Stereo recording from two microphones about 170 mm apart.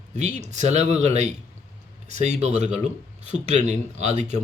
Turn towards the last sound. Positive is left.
turn(degrees=-40)  # may be behind; listen again after turning